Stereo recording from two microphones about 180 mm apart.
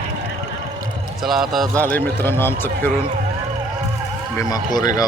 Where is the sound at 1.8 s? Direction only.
10° left (ahead or behind).